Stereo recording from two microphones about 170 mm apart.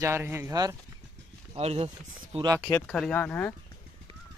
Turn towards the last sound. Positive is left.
turn(degrees=10)  # may be behind; listen again after turning